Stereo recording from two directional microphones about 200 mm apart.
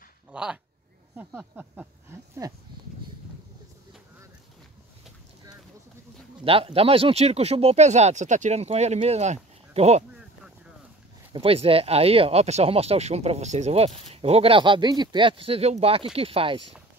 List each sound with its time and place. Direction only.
0.3 s speech: 5° right (ahead or behind)
6.4 s speech: 30° right (ahead or behind)
11.3 s speech: 30° right (ahead or behind)